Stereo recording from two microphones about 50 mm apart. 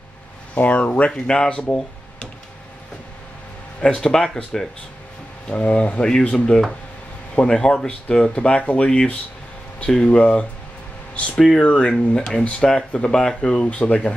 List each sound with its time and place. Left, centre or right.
0.6 s speech: left
1.1 s speech: centre
3.8 s speech: centre
5.5 s speech: left
11.3 s speech: centre
11.6 s speech: left